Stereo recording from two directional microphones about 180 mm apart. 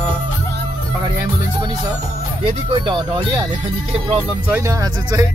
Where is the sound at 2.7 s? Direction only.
25° right (ahead or behind).